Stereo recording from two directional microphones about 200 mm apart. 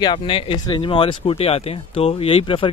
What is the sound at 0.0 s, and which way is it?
Speech, 25° left (ahead or behind).